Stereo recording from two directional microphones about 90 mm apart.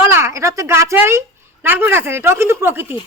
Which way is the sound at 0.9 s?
30° right (ahead or behind).